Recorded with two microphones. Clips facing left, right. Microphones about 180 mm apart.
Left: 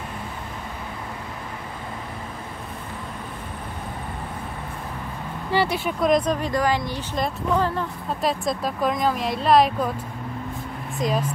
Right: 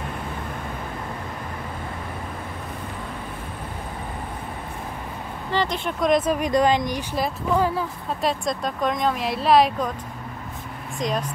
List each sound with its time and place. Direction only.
5.5 s speech: 10° left (ahead or behind); by 6.5 s 10° right (ahead or behind)
6.5 s speech: 20° right (ahead or behind)
7.2 s speech: 5° right (ahead or behind)
11.0 s speech: 5° left (ahead or behind)